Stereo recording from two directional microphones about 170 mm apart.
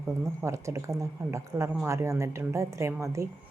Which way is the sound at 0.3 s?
15° right (ahead or behind).